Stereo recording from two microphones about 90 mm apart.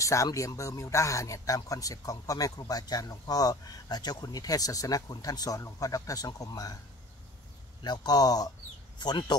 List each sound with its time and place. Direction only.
0.0 s speech: 35° left (ahead or behind)
7.8 s speech: 50° left (ahead or behind)